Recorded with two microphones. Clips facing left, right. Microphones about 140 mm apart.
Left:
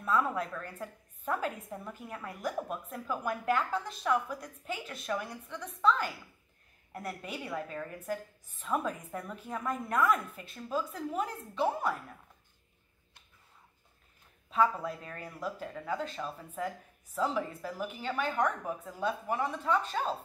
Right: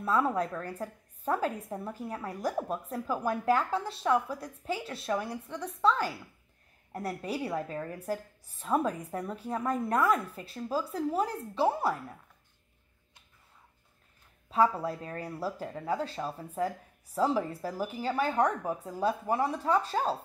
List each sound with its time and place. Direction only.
0.0 s a woman's voice: 35° right (ahead or behind)
14.5 s a woman's voice: 30° right (ahead or behind)